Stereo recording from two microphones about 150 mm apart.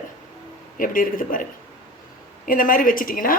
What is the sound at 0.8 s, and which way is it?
Speech, 65° left (ahead or behind).